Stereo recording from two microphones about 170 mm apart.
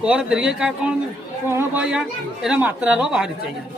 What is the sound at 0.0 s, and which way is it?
A woman's voice, 5° right (ahead or behind).